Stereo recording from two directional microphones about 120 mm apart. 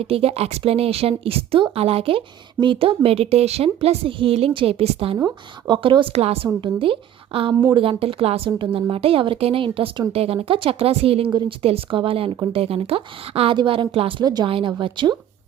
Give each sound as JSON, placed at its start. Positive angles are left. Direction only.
{"t": 0.0, "sound": "speech", "side_deg": -55}
{"t": 5.6, "sound": "speech", "side_deg": -40}
{"t": 11.3, "sound": "a woman's voice", "side_deg": -40}
{"t": 11.6, "sound": "speech", "side_deg": -50}
{"t": 14.3, "sound": "a woman's voice", "side_deg": -35}